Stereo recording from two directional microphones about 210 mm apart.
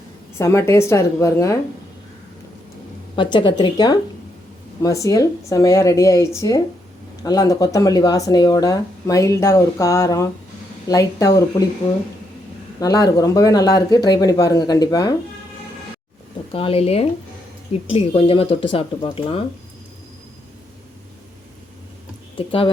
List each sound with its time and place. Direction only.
0.3 s speech: 15° left (ahead or behind)
3.2 s speech: 20° left (ahead or behind)
12.8 s speech: 15° left (ahead or behind)
16.5 s speech: 25° left (ahead or behind)
22.4 s speech: 25° left (ahead or behind)